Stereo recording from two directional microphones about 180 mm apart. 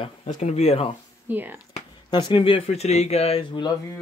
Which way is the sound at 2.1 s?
25° left (ahead or behind).